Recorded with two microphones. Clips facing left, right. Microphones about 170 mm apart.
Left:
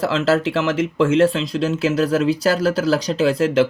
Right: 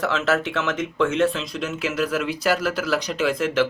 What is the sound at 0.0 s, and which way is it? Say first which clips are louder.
Speech: left 5 dB; 30° left (ahead or behind).